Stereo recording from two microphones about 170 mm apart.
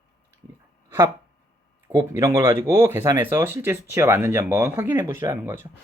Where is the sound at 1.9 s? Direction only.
20° right (ahead or behind).